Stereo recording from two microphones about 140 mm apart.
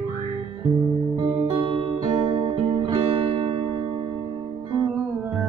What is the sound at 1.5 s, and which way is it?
Music, 40° right (ahead or behind).